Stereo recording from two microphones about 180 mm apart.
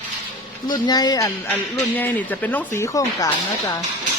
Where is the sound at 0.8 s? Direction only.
20° left (ahead or behind).